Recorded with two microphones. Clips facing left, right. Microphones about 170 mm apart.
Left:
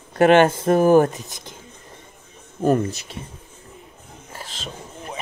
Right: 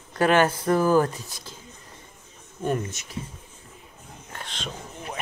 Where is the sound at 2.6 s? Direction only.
35° left (ahead or behind).